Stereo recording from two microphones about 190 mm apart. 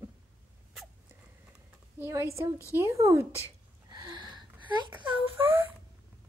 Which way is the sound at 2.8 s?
15° right (ahead or behind).